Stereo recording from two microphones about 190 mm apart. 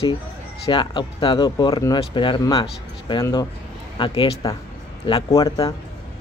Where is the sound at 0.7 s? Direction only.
25° left (ahead or behind).